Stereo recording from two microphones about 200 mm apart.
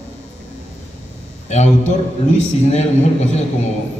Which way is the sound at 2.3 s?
35° left (ahead or behind).